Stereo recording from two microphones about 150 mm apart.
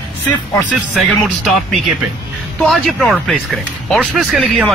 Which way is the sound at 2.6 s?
Centre (ahead or behind).